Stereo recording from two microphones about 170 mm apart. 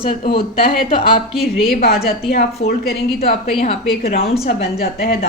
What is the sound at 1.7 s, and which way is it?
A woman's voice, 65° left (ahead or behind).